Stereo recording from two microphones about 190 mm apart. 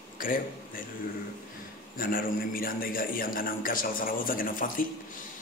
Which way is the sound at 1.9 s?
50° left (ahead or behind).